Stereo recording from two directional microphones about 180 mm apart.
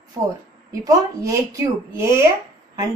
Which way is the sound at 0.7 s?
20° right (ahead or behind).